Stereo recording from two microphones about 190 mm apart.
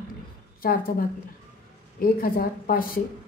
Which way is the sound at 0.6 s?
50° left (ahead or behind).